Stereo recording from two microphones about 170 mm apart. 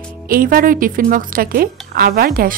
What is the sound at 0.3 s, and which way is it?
A woman's voice, 55° right (ahead or behind).